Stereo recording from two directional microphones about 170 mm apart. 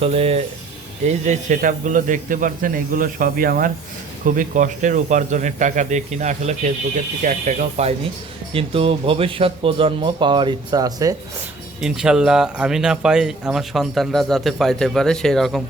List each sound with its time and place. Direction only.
0.0 s a man's voice: 35° right (ahead or behind)
11.8 s speech: 5° right (ahead or behind)